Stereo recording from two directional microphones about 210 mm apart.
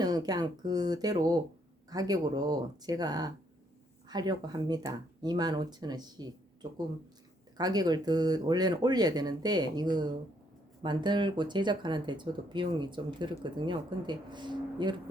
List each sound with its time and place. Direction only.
0.0 s speech: 20° right (ahead or behind)